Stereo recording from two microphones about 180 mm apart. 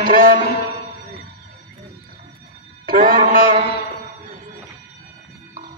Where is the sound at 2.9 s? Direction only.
50° right (ahead or behind).